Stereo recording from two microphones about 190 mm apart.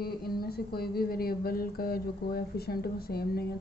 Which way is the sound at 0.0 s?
55° left (ahead or behind).